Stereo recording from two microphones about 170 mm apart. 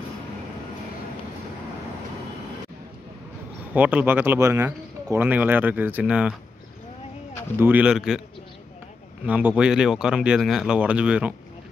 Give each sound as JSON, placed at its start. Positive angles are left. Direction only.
{"t": 3.7, "sound": "speech", "side_deg": -10}
{"t": 7.5, "sound": "speech", "side_deg": -10}
{"t": 9.2, "sound": "speech", "side_deg": -10}